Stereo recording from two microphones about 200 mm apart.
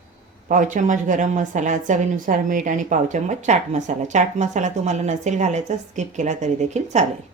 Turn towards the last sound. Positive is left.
turn(degrees=-35)  # may be behind; listen again after turning